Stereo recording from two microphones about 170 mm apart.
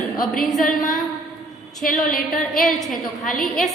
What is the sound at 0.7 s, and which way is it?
A woman's voice, 50° left (ahead or behind).